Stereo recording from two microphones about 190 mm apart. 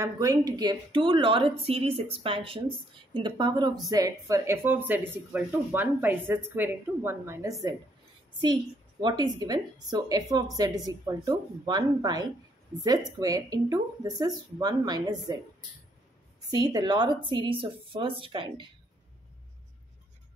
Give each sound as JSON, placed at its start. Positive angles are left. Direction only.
{"t": 0.0, "sound": "a woman's voice", "side_deg": -20}
{"t": 9.0, "sound": "a woman's voice", "side_deg": -20}
{"t": 16.4, "sound": "a woman's voice", "side_deg": -20}